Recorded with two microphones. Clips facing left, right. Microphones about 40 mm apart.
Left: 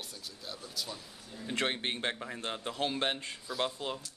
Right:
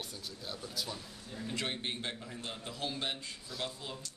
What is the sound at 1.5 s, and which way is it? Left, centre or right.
A man's voice, left.